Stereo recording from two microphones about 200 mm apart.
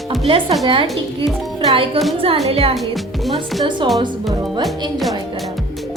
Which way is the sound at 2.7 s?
Centre (ahead or behind).